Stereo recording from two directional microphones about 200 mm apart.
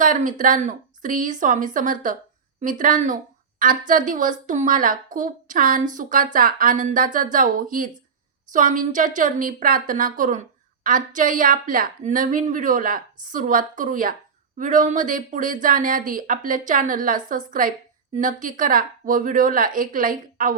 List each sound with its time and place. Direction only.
0.0 s a woman's voice: 40° right (ahead or behind)